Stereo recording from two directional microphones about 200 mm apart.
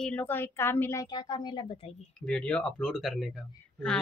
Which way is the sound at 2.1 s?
5° left (ahead or behind).